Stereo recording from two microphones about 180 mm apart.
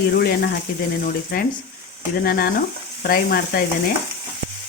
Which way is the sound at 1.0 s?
55° left (ahead or behind).